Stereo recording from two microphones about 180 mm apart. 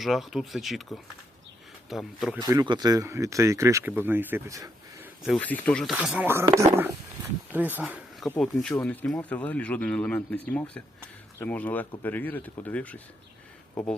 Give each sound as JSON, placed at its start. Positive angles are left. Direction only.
{"t": 0.0, "sound": "speech", "side_deg": 0}
{"t": 2.4, "sound": "speech", "side_deg": -20}
{"t": 5.2, "sound": "speech", "side_deg": 5}
{"t": 8.7, "sound": "speech", "side_deg": 10}